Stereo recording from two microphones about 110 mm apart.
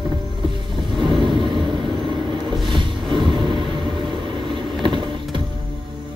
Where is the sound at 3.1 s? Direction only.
45° right (ahead or behind).